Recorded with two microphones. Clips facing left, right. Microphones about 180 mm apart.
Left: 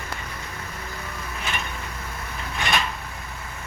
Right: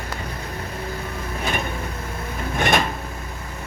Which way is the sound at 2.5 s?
50° right (ahead or behind).